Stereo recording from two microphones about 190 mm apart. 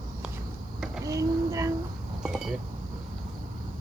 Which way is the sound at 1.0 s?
15° right (ahead or behind).